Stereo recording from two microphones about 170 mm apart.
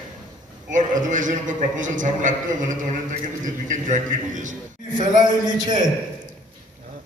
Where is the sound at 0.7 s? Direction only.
50° right (ahead or behind).